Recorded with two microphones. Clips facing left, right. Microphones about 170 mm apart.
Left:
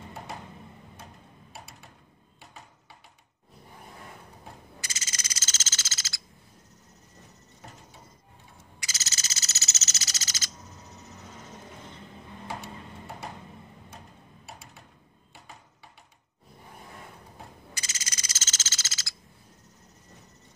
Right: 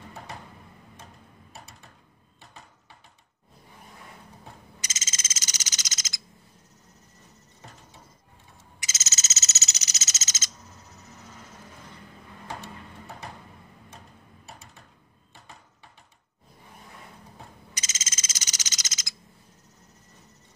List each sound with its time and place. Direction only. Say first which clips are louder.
4.7 s frog: even; 20° right (ahead or behind)
8.7 s frog: right 1 dB; 20° right (ahead or behind)
17.7 s frog: right 2 dB; 20° right (ahead or behind)